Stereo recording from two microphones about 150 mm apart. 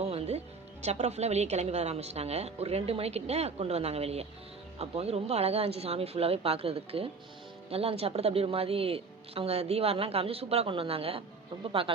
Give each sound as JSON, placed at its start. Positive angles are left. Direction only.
{"t": 0.0, "sound": "a woman's voice", "side_deg": -45}